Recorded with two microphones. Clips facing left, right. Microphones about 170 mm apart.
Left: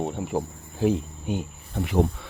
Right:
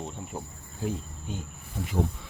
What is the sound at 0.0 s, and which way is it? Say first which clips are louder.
Speech: left 10 dB; 70° left (ahead or behind).